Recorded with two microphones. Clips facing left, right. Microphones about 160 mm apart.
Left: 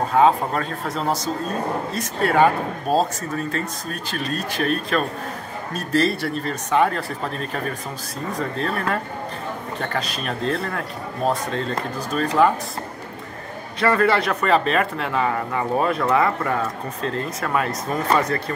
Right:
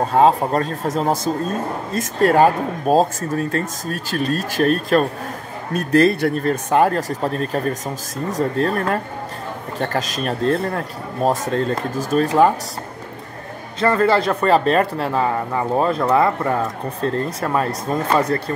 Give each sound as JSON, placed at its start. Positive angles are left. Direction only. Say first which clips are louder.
{"t": 0.2, "sound": "speech", "louder": "right 2 dB", "side_deg": -40}
{"t": 13.7, "sound": "speech", "louder": "right 2 dB", "side_deg": -25}